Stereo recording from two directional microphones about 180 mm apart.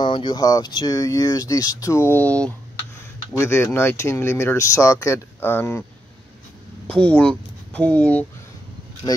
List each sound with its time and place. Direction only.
0.0 s speech: 25° left (ahead or behind)
6.9 s speech: 5° left (ahead or behind)